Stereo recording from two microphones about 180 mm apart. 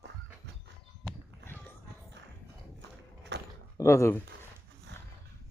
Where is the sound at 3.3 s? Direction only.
80° right.